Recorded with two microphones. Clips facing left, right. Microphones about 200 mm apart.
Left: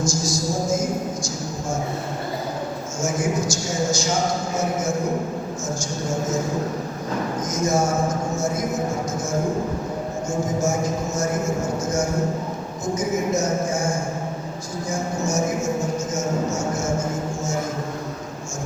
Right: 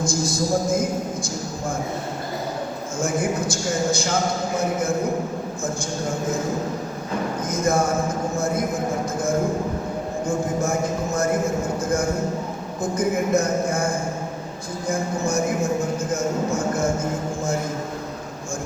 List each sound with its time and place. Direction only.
0.0 s a sound: 55° right (ahead or behind)
3.0 s a man's voice: 55° right (ahead or behind)
7.5 s a man's voice: 55° right (ahead or behind)
10.2 s a man's voice: 55° right (ahead or behind)
12.8 s a man's voice: 55° right (ahead or behind)